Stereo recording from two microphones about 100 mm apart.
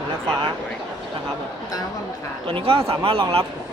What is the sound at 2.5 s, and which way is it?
Speech, 60° right (ahead or behind).